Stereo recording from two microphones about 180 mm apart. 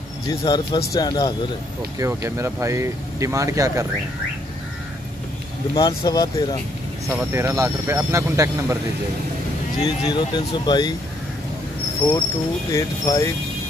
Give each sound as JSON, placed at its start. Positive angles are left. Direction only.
{"t": 0.3, "sound": "speech", "side_deg": 25}
{"t": 2.0, "sound": "speech", "side_deg": -15}
{"t": 5.8, "sound": "speech", "side_deg": 20}
{"t": 7.1, "sound": "speech", "side_deg": -15}
{"t": 9.8, "sound": "speech", "side_deg": 25}
{"t": 12.0, "sound": "speech", "side_deg": 10}